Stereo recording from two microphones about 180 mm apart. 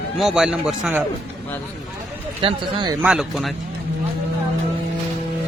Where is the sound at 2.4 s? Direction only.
25° right (ahead or behind).